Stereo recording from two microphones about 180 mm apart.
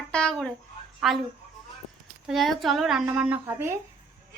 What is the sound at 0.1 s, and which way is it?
Speech, 5° left (ahead or behind).